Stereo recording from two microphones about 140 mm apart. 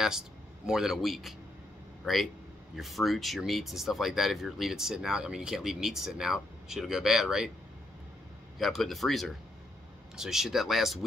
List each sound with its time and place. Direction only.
0.7 s speech: 5° right (ahead or behind)
2.7 s speech: centre (ahead or behind)
8.5 s speech: centre (ahead or behind)